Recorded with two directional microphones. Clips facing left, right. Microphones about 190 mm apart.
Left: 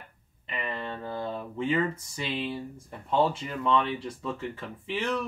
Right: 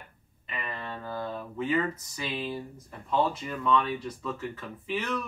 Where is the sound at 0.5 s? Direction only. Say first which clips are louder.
Left 3 dB; 25° left (ahead or behind).